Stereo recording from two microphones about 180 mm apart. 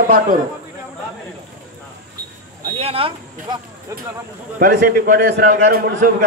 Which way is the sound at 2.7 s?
30° right (ahead or behind).